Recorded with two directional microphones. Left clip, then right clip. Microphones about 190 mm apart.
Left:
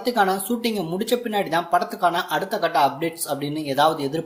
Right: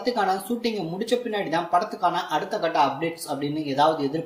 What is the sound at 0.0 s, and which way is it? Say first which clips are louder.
Speech: left 3 dB; 45° left (ahead or behind).